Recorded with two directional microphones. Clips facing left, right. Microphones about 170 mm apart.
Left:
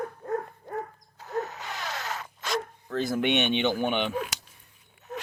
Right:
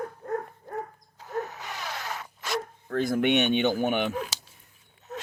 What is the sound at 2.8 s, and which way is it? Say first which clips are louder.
Speech: right 3 dB; 50° right (ahead or behind).